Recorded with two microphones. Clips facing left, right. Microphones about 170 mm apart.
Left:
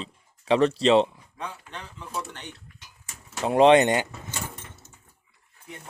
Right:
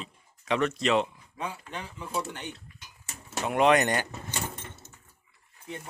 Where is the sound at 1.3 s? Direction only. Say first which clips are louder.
Right 1 dB; 10° right (ahead or behind).